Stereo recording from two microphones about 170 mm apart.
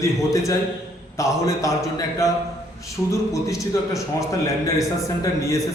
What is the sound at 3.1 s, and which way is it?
A man's voice, 20° left (ahead or behind).